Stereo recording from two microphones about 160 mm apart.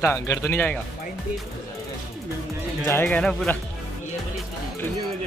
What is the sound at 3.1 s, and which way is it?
Speech, 5° left (ahead or behind).